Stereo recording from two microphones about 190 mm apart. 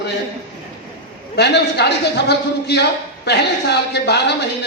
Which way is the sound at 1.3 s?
60° left (ahead or behind).